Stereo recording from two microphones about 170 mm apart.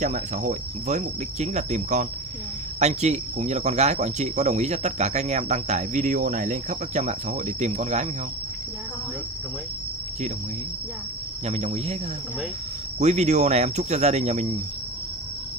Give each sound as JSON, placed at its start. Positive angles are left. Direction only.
{"t": 0.0, "sound": "cricket", "side_deg": -50}
{"t": 2.8, "sound": "speech", "side_deg": -40}
{"t": 11.4, "sound": "speech", "side_deg": -40}
{"t": 13.0, "sound": "speech", "side_deg": -40}